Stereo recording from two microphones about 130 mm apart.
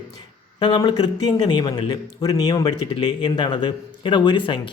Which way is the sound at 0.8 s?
30° left (ahead or behind).